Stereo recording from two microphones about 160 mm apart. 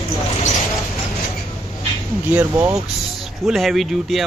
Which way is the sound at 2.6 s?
5° right (ahead or behind).